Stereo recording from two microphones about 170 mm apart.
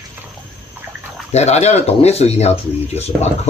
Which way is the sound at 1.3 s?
40° left (ahead or behind).